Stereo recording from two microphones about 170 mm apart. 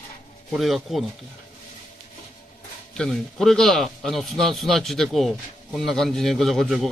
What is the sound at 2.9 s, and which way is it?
A man's voice, 5° left (ahead or behind).